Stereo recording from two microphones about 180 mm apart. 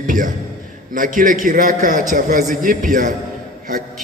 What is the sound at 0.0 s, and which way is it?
A man's voice, 45° right (ahead or behind).